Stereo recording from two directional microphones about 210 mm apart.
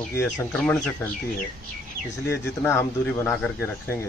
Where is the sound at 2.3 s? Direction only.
15° left (ahead or behind).